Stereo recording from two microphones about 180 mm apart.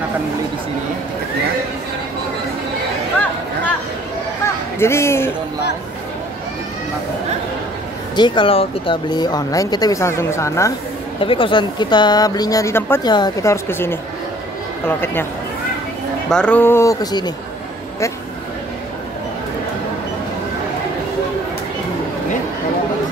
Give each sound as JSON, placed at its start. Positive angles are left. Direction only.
{"t": 4.7, "sound": "speech", "side_deg": 15}
{"t": 8.2, "sound": "speech", "side_deg": 30}
{"t": 11.1, "sound": "speech", "side_deg": 30}
{"t": 16.3, "sound": "speech", "side_deg": 5}